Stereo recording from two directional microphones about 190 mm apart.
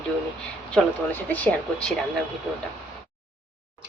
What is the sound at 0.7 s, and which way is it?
Speech, 10° left (ahead or behind).